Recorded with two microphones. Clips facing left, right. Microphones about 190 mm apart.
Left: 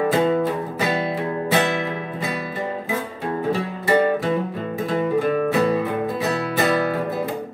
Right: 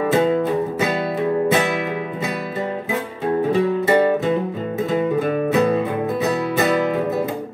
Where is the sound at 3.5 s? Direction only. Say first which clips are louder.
Right 3 dB; 20° right (ahead or behind).